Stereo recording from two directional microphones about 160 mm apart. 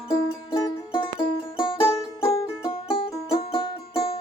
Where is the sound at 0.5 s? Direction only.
30° left (ahead or behind).